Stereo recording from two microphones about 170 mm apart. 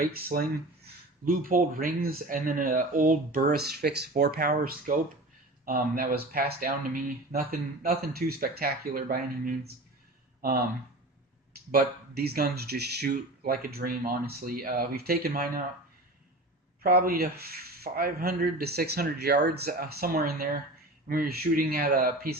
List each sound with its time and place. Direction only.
0.0 s speech: 60° right (ahead or behind)
11.7 s speech: 65° right (ahead or behind)
16.8 s speech: 60° right (ahead or behind)